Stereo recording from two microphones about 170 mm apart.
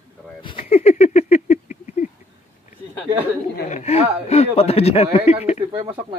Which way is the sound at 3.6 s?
40° left (ahead or behind).